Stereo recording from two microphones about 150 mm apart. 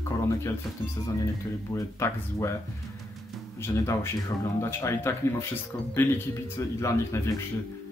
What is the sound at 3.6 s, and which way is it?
Speech, 15° left (ahead or behind).